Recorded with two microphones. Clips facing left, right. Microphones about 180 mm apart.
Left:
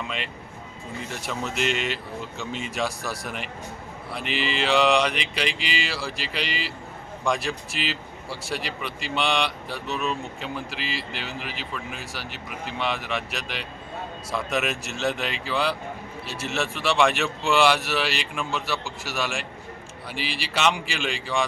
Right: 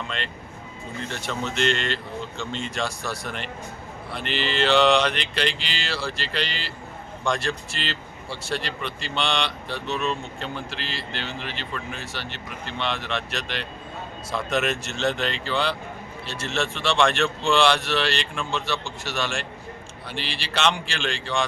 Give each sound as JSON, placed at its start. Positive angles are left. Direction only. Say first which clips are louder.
{"t": 0.0, "sound": "speech", "louder": "even", "side_deg": 5}